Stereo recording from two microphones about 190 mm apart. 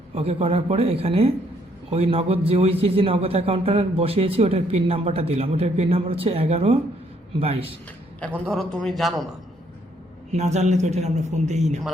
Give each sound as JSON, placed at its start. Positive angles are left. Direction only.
{"t": 0.1, "sound": "a man's voice", "side_deg": -35}
{"t": 8.4, "sound": "a man's voice", "side_deg": 5}
{"t": 10.3, "sound": "a man's voice", "side_deg": -35}